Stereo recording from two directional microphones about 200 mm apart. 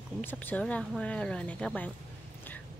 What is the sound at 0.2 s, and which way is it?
A woman's voice, 10° left (ahead or behind).